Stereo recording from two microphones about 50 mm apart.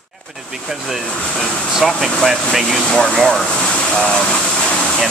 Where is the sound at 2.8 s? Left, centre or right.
Centre.